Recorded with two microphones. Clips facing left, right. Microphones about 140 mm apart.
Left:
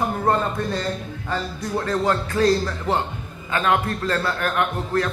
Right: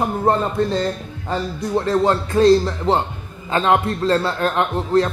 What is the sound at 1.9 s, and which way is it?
A man's voice, 25° right (ahead or behind).